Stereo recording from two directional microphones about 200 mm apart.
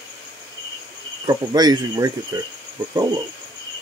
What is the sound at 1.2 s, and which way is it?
Speech, 20° right (ahead or behind).